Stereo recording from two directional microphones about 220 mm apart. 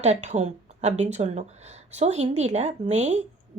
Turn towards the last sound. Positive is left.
turn(degrees=-30)  # may be behind; listen again after turning